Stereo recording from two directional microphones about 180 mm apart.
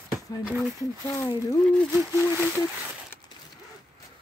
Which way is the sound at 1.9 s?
10° left (ahead or behind).